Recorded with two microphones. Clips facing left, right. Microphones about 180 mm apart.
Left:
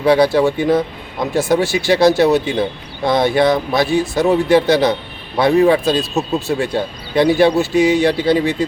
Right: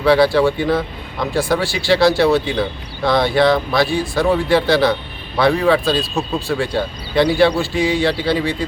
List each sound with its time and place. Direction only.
0.0 s a man's voice: 20° left (ahead or behind)